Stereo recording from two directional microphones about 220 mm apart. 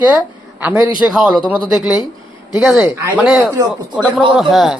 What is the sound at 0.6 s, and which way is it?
Speech, 5° right (ahead or behind).